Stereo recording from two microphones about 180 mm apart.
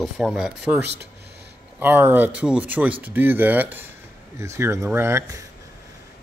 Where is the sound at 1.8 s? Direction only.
10° right (ahead or behind).